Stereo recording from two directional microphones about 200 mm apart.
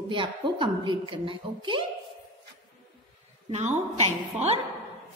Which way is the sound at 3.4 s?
35° right (ahead or behind).